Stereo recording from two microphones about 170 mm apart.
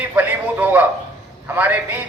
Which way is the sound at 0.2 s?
10° right (ahead or behind).